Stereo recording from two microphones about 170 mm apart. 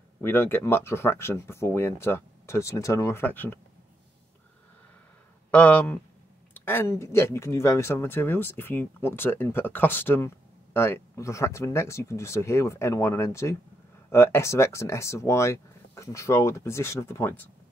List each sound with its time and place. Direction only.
0.2 s speech: 15° left (ahead or behind)
5.5 s speech: 10° left (ahead or behind)